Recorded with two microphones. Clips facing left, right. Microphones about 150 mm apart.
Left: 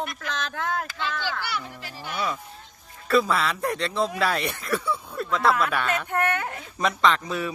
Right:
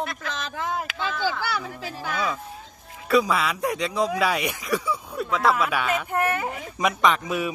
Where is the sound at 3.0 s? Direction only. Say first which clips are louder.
Right 1 dB; 10° right (ahead or behind).